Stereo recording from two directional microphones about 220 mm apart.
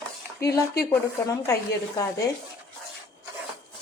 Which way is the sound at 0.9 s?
15° left (ahead or behind).